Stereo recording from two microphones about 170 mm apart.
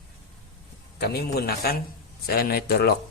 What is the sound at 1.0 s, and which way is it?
Speech, 70° left (ahead or behind).